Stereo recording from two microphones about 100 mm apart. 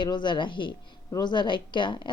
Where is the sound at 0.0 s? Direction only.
50° left (ahead or behind).